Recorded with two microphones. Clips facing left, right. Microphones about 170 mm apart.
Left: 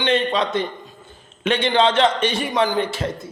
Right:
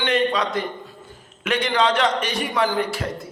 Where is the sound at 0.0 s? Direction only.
25° left (ahead or behind).